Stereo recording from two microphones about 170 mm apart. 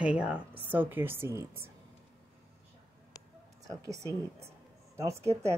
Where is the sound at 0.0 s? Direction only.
5° right (ahead or behind).